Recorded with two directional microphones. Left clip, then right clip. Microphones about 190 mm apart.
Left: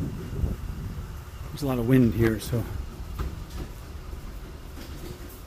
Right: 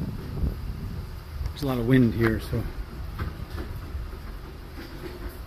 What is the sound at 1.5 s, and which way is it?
Speech, 10° left (ahead or behind).